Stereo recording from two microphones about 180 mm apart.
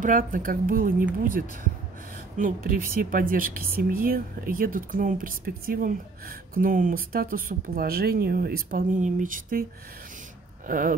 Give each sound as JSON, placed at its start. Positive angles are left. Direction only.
{"t": 0.0, "sound": "speech", "side_deg": -50}
{"t": 10.7, "sound": "speech", "side_deg": -50}